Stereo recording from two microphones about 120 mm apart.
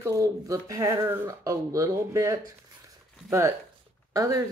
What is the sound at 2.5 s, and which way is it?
Writing, 25° right (ahead or behind).